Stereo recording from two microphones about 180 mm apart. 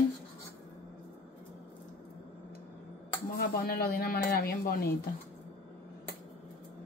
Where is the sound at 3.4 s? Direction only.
55° left (ahead or behind).